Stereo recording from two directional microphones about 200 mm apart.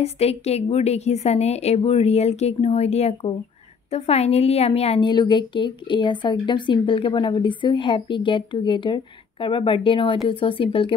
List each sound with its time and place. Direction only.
0.0 s a woman's voice: 30° left (ahead or behind)